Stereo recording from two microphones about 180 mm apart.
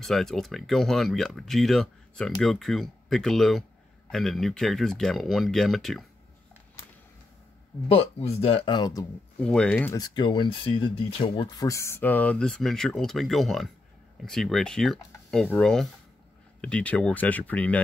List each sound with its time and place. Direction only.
0.0 s speech: centre (ahead or behind)
7.9 s speech: 35° left (ahead or behind)
9.4 s speech: 5° left (ahead or behind)
9.9 s speech: 25° left (ahead or behind)
11.5 s speech: 15° left (ahead or behind)